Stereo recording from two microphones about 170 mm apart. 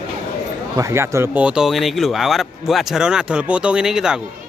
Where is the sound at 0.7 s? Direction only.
15° right (ahead or behind).